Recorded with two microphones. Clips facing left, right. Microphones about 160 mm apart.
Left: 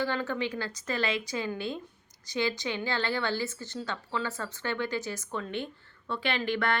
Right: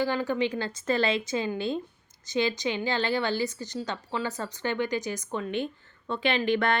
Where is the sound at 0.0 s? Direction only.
15° right (ahead or behind).